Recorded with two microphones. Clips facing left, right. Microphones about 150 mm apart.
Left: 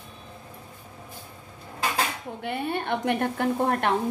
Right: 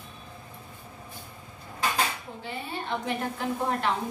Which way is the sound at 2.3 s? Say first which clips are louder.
Left 10 dB; 65° left (ahead or behind).